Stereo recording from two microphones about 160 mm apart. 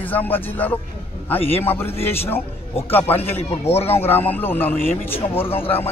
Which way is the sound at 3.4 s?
40° left (ahead or behind).